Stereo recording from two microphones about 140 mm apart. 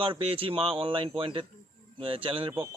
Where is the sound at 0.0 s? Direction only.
40° right (ahead or behind).